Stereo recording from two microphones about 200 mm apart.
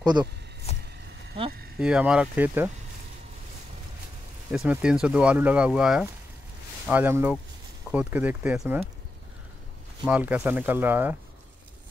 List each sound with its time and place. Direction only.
0.0 s speech: 20° right (ahead or behind)
0.7 s vehicle: 30° left (ahead or behind)
1.8 s speech: 5° right (ahead or behind)
4.5 s speech: 5° right (ahead or behind)
10.0 s speech: 5° right (ahead or behind)